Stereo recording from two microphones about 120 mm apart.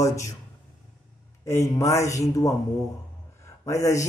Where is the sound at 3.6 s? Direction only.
25° left (ahead or behind).